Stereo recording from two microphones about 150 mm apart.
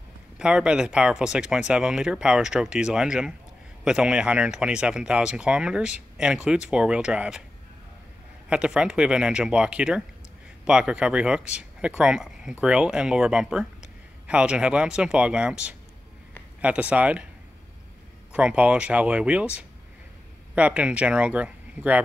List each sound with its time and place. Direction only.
0.4 s speech: 5° right (ahead or behind)
8.5 s speech: 5° right (ahead or behind)
18.3 s speech: 5° right (ahead or behind)
20.5 s speech: 10° right (ahead or behind)